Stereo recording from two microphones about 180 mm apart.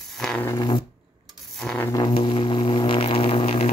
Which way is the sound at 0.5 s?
25° left (ahead or behind).